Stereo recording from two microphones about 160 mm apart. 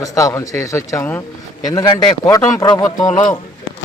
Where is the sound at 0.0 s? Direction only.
20° left (ahead or behind).